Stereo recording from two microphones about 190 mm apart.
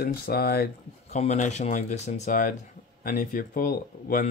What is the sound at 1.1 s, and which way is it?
Speech, 35° left (ahead or behind).